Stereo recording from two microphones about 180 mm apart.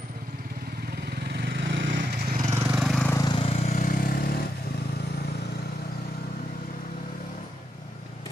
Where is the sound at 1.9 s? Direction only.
45° right (ahead or behind).